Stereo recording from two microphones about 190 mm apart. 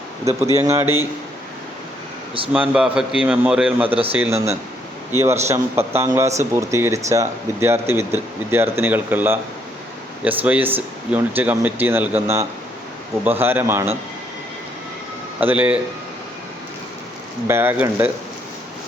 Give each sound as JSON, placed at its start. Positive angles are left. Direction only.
{"t": 0.5, "sound": "speech", "side_deg": -15}
{"t": 2.5, "sound": "a man's voice", "side_deg": -5}
{"t": 3.8, "sound": "speech", "side_deg": -30}
{"t": 4.1, "sound": "speech", "side_deg": -10}
{"t": 15.4, "sound": "speech", "side_deg": -10}
{"t": 17.5, "sound": "speech", "side_deg": -10}